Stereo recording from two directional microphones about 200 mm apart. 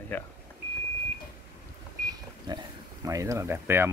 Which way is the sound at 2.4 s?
20° right (ahead or behind).